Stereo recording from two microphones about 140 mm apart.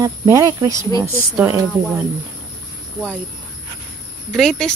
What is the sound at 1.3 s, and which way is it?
Speech, 10° right (ahead or behind).